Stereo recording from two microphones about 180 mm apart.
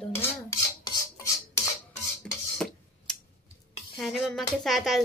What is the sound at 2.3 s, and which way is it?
Cutlery, 5° left (ahead or behind).